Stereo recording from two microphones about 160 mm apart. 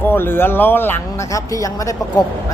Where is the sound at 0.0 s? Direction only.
15° left (ahead or behind).